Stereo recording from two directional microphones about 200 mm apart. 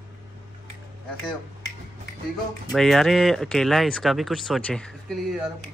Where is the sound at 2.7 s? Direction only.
Centre (ahead or behind).